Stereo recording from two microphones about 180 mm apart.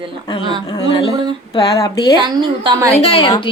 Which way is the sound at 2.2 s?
25° right (ahead or behind).